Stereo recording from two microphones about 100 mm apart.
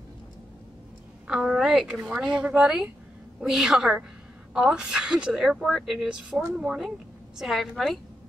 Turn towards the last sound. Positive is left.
turn(degrees=0)  # may be behind; listen again after turning